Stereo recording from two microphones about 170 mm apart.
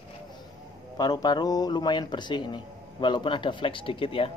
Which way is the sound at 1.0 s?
25° left (ahead or behind).